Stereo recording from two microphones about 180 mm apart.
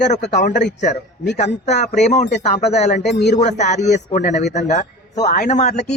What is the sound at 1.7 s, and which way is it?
Speech, 40° left (ahead or behind).